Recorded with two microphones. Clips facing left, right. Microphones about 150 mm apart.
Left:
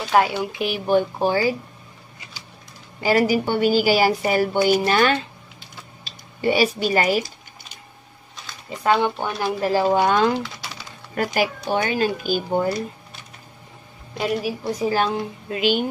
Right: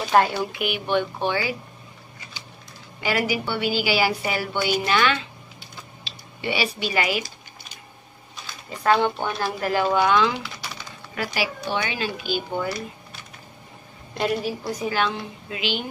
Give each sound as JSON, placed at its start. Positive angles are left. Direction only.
{"t": 0.1, "sound": "a woman's voice", "side_deg": 5}
{"t": 0.5, "sound": "a woman's voice", "side_deg": 30}
{"t": 3.0, "sound": "a woman's voice", "side_deg": 40}
{"t": 9.0, "sound": "speech", "side_deg": 15}
{"t": 9.6, "sound": "a woman's voice", "side_deg": 30}
{"t": 10.4, "sound": "typing", "side_deg": 0}
{"t": 11.1, "sound": "speech", "side_deg": 45}
{"t": 14.1, "sound": "a woman's voice", "side_deg": 5}
{"t": 14.6, "sound": "a woman's voice", "side_deg": 35}